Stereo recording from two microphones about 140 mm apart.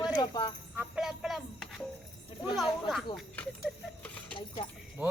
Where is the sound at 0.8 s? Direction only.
5° right (ahead or behind).